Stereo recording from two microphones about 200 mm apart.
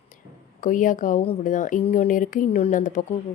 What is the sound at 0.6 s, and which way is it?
Speech, 40° left (ahead or behind).